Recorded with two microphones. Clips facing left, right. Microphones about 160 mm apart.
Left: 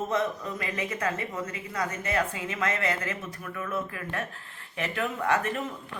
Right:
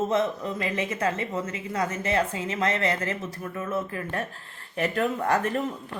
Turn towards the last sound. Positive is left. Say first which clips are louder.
# right 3 dB
turn(degrees=-40)  # may be behind; listen again after turning